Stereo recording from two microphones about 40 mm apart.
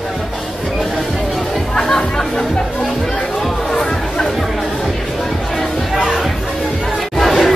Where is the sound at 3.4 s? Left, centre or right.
Centre.